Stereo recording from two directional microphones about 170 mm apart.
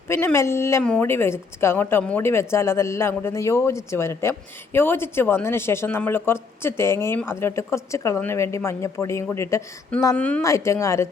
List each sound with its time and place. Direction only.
0.1 s a woman's voice: 15° left (ahead or behind)